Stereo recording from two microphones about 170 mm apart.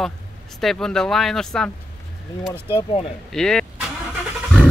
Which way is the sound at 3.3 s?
5° left (ahead or behind).